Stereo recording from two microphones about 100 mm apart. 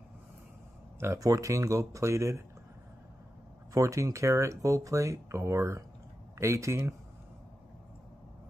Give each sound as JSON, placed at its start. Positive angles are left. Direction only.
{"t": 0.9, "sound": "speech", "side_deg": -25}
{"t": 3.7, "sound": "speech", "side_deg": -30}